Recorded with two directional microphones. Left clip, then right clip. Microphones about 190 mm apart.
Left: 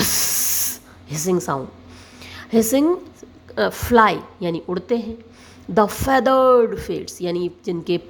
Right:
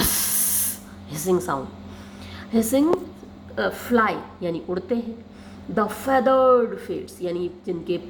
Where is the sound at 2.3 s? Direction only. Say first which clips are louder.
Left 4 dB; 40° left (ahead or behind).